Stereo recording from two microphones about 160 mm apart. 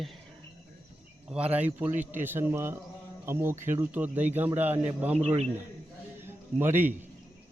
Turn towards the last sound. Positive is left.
turn(degrees=-15)  # may be behind; listen again after turning